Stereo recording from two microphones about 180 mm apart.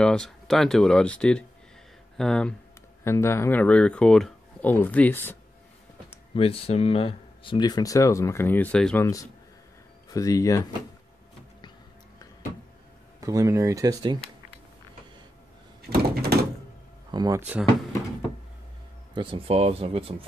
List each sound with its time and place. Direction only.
0.0 s speech: 5° left (ahead or behind)
3.0 s speech: 15° left (ahead or behind)
6.3 s speech: 30° left (ahead or behind); by 9.0 s 5° left (ahead or behind)
9.0 s speech: 20° left (ahead or behind)
13.2 s speech: 20° right (ahead or behind)
15.9 s door: 60° right (ahead or behind)
17.1 s speech: 20° right (ahead or behind)
19.1 s speech: 30° right (ahead or behind)